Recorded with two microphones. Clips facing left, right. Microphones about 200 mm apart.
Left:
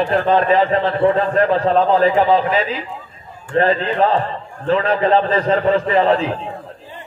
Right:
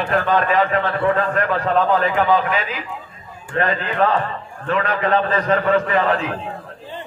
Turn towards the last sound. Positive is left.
turn(degrees=30)  # may be behind; listen again after turning